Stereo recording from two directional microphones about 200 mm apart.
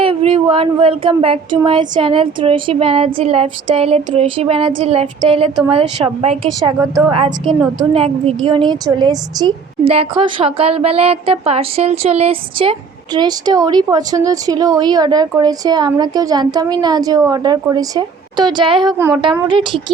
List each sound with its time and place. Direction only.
0.0 s a woman's voice: 25° right (ahead or behind)
6.6 s a woman's voice: 20° right (ahead or behind)
7.4 s a woman's voice: 5° right (ahead or behind)
7.9 s a woman's voice: 30° right (ahead or behind)
18.9 s a woman's voice: 10° right (ahead or behind)
19.2 s speech: 25° right (ahead or behind)